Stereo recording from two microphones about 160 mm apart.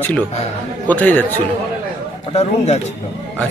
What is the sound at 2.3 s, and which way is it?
Speech, 40° left (ahead or behind).